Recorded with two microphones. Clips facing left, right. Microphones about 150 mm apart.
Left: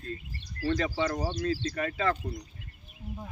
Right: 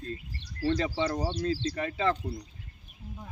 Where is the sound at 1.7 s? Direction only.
20° right (ahead or behind).